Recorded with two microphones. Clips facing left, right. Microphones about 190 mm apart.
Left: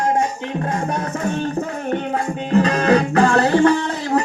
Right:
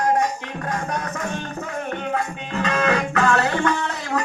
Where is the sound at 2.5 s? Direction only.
35° left (ahead or behind).